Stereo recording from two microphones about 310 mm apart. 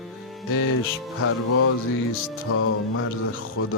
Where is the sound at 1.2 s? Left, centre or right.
Left.